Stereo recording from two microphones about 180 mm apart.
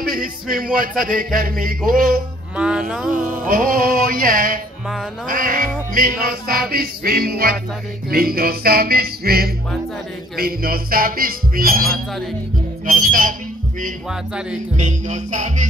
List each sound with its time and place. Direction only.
0.0 s music: 55° right (ahead or behind)
2.5 s music: 5° right (ahead or behind)
3.1 s music: 50° right (ahead or behind)
14.8 s music: 40° right (ahead or behind)